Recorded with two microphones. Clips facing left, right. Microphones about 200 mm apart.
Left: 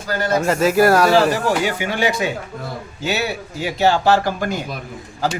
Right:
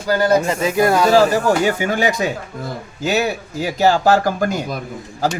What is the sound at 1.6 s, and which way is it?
Speech, 45° right (ahead or behind).